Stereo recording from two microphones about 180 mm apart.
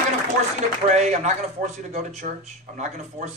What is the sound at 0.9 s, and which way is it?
A man's voice, 40° right (ahead or behind).